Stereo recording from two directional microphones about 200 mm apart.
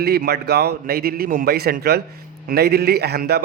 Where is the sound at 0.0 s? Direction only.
50° right (ahead or behind).